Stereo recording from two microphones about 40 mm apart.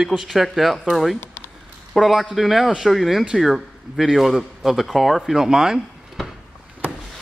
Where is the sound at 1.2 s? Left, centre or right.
Left.